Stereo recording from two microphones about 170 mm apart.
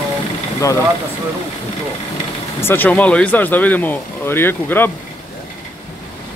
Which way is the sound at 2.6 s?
10° left (ahead or behind).